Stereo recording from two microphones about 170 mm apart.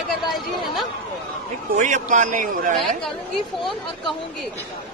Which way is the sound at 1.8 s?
45° right (ahead or behind).